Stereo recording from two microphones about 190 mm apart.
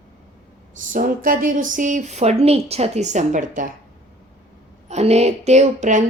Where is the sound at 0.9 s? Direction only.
45° right (ahead or behind).